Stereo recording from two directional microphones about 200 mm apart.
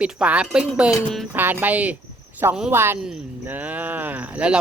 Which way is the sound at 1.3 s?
10° right (ahead or behind).